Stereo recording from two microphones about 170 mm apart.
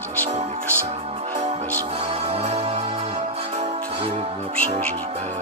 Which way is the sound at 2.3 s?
35° right (ahead or behind).